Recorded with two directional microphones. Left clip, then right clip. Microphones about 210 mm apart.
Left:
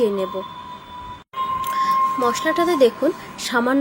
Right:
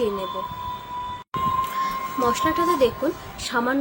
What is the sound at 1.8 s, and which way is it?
A woman's voice, 30° left (ahead or behind).